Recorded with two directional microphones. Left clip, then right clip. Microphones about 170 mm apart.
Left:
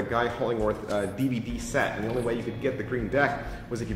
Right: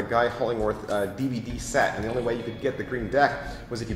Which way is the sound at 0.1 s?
25° left (ahead or behind).